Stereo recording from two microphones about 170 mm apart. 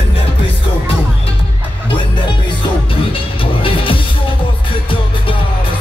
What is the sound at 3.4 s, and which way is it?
Music, 30° left (ahead or behind).